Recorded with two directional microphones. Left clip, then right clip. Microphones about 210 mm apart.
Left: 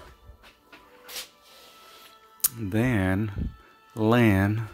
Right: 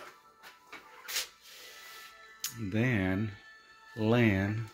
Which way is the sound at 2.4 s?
30° left (ahead or behind).